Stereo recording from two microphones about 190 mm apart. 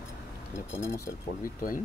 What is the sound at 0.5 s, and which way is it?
Speech, 15° left (ahead or behind).